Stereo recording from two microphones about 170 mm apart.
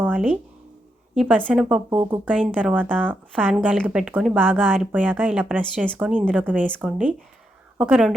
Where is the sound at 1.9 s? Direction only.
25° right (ahead or behind).